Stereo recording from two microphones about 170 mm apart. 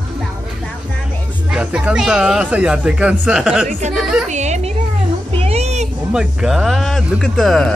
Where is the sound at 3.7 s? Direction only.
45° right (ahead or behind).